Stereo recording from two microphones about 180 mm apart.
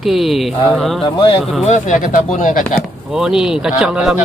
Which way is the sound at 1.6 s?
40° left (ahead or behind).